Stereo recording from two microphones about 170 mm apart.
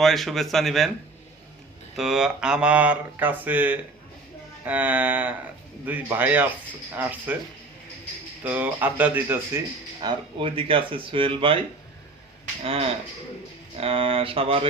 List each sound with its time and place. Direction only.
0.0 s speech: centre (ahead or behind)
2.0 s speech: 5° right (ahead or behind)
8.4 s speech: 10° right (ahead or behind)
10.0 s speech: 30° right (ahead or behind)
12.6 s speech: 35° right (ahead or behind)